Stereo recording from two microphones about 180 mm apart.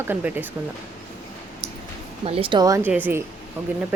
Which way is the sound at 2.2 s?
30° right (ahead or behind).